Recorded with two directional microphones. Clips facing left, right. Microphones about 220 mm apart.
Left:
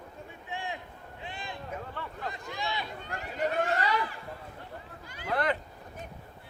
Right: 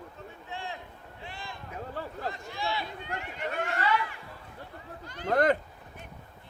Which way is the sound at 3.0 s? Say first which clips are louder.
Left 4 dB; 40° left (ahead or behind).